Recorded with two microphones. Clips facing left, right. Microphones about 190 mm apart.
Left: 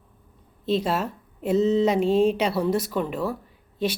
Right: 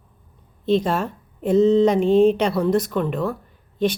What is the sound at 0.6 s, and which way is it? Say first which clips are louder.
A woman's voice: right 4 dB; 5° left (ahead or behind).